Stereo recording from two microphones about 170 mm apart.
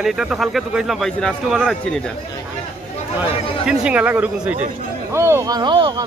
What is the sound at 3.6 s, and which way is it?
Speech, 5° right (ahead or behind).